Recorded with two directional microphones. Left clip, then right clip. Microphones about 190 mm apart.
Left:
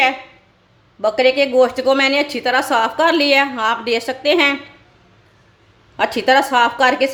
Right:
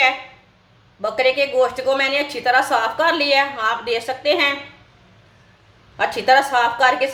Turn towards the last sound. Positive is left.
turn(degrees=45)  # may be behind; listen again after turning